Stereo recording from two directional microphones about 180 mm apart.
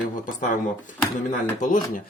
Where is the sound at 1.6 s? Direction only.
45° left (ahead or behind).